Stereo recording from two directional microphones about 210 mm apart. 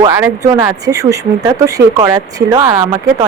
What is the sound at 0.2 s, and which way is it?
Speech, 15° right (ahead or behind).